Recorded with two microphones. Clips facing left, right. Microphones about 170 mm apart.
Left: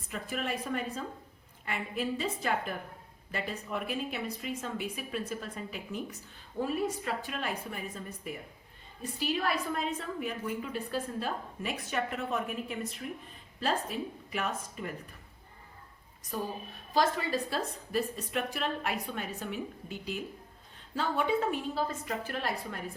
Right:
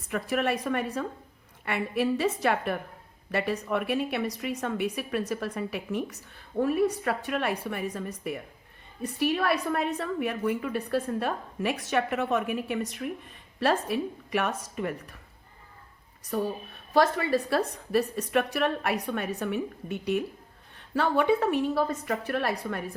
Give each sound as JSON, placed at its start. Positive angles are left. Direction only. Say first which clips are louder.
{"t": 0.1, "sound": "a woman's voice", "louder": "right 8 dB", "side_deg": -70}
{"t": 6.6, "sound": "a woman's voice", "louder": "right 7 dB", "side_deg": -60}
{"t": 9.0, "sound": "a woman's voice", "louder": "right 6 dB", "side_deg": -65}
{"t": 16.9, "sound": "a woman's voice", "louder": "right 5 dB", "side_deg": -65}